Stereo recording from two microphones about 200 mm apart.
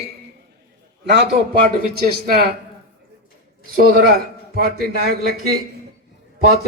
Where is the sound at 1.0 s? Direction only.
55° right (ahead or behind).